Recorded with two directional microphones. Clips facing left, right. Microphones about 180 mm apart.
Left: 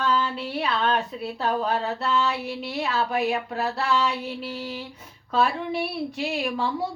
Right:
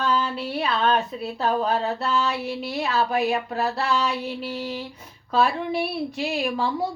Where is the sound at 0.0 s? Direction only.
35° right (ahead or behind).